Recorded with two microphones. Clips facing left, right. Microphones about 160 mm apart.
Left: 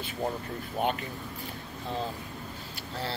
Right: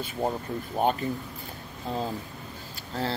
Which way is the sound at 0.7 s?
40° right (ahead or behind).